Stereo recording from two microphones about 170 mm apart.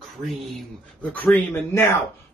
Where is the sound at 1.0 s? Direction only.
10° left (ahead or behind).